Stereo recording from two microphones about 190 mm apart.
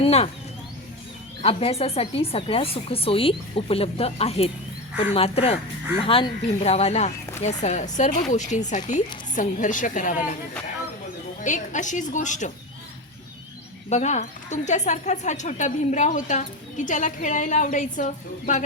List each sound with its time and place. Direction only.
0.0 s a sound: 30° left (ahead or behind)
1.4 s a woman's voice: 30° left (ahead or behind)
11.4 s speech: 40° left (ahead or behind)
13.9 s speech: 35° left (ahead or behind)